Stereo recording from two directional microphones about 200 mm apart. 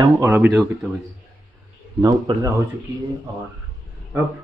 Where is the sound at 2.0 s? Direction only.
20° right (ahead or behind).